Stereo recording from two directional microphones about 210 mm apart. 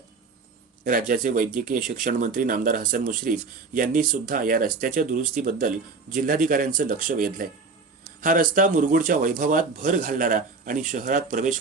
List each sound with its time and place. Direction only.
0.9 s speech: 40° right (ahead or behind)